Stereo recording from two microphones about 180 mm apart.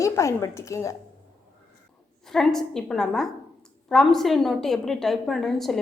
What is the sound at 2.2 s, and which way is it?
A woman's voice, centre (ahead or behind).